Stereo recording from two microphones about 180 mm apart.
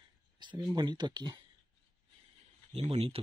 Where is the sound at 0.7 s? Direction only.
25° right (ahead or behind).